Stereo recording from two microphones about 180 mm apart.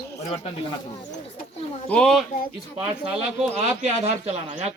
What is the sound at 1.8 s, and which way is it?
Speech, 5° left (ahead or behind).